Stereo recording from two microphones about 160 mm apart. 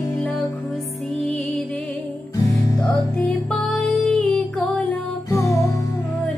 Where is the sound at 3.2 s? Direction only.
Centre (ahead or behind); by 5.7 s 20° left (ahead or behind).